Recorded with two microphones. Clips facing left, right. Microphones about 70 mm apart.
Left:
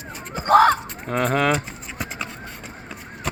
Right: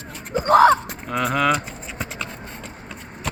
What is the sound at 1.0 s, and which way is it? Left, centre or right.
Speech, left.